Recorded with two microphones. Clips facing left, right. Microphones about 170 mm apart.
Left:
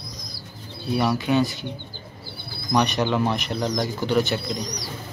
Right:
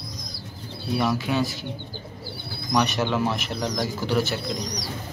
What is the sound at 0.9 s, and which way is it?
Speech, centre (ahead or behind).